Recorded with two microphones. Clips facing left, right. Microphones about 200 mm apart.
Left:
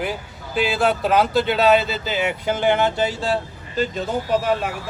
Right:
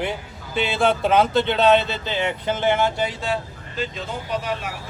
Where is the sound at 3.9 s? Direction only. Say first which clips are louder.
Left 6 dB; 50° left (ahead or behind).